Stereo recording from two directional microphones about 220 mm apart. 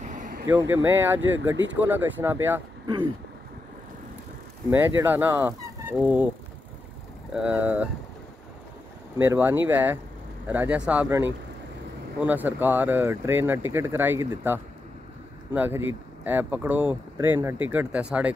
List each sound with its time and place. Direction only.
0.0 s vehicle: 35° right (ahead or behind)
0.5 s speech: 10° right (ahead or behind)
4.6 s speech: 10° right (ahead or behind)
7.3 s speech: 5° right (ahead or behind)
9.2 s speech: 10° right (ahead or behind)